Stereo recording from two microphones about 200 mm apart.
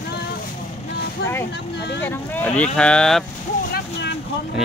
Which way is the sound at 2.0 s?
10° left (ahead or behind).